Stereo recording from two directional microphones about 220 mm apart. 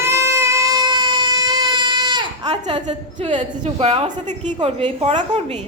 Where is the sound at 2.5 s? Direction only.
20° right (ahead or behind).